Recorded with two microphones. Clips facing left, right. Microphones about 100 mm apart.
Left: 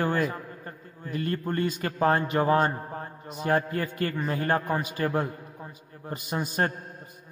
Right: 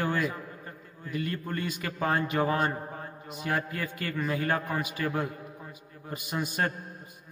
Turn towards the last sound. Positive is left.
turn(degrees=30)  # may be behind; listen again after turning